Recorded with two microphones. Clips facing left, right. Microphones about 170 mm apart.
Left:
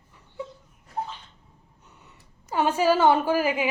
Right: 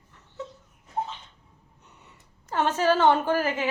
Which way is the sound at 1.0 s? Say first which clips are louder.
Right 1 dB; 20° right (ahead or behind).